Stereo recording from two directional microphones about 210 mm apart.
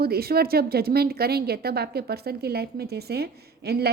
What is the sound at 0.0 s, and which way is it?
A woman's voice, 45° right (ahead or behind).